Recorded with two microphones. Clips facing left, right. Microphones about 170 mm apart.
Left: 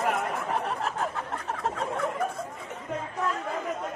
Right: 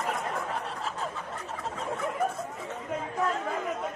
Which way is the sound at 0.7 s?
60° left (ahead or behind).